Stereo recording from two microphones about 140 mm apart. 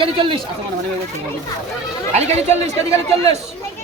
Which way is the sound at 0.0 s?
35° right (ahead or behind).